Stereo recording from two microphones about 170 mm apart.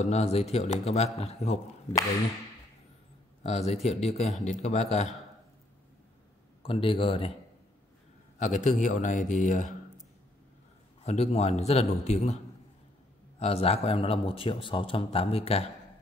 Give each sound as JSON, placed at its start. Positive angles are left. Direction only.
{"t": 0.0, "sound": "speech", "side_deg": 40}
{"t": 3.4, "sound": "speech", "side_deg": 40}
{"t": 6.6, "sound": "speech", "side_deg": 30}
{"t": 8.4, "sound": "a man's voice", "side_deg": 45}
{"t": 11.0, "sound": "speech", "side_deg": 40}
{"t": 13.4, "sound": "speech", "side_deg": 35}